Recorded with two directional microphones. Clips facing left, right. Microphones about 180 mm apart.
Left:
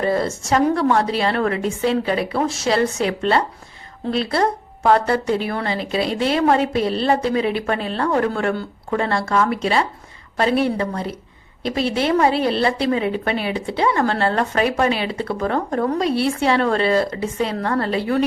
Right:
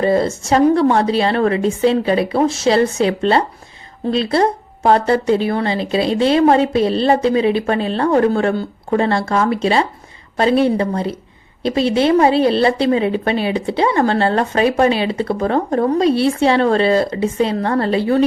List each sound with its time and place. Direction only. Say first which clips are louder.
0.0 s a woman's voice: right 5 dB; 25° right (ahead or behind)